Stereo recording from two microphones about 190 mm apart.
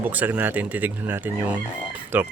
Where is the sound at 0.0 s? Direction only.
10° right (ahead or behind).